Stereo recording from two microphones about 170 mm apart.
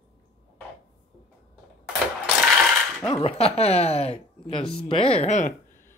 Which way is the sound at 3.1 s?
35° left (ahead or behind).